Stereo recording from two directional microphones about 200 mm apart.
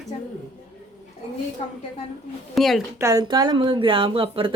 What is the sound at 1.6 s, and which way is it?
Speech, 30° left (ahead or behind).